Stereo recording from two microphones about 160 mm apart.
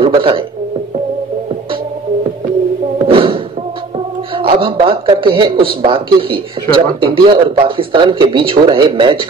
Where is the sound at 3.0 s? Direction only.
35° right (ahead or behind).